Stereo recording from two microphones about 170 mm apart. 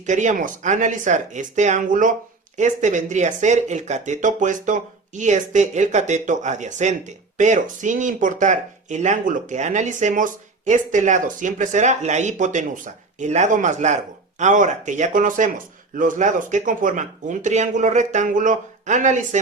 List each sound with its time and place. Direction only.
0.0 s speech: 45° right (ahead or behind)